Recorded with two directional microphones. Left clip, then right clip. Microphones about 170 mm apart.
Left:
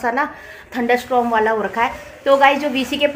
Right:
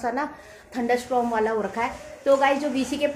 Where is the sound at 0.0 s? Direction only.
25° left (ahead or behind).